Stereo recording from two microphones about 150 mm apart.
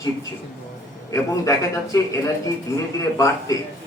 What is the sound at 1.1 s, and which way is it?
A man's voice, 20° left (ahead or behind).